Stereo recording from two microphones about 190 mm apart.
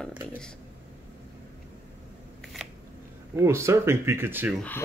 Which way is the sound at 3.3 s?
15° right (ahead or behind).